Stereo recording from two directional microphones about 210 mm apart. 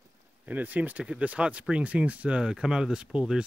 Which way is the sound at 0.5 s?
10° right (ahead or behind).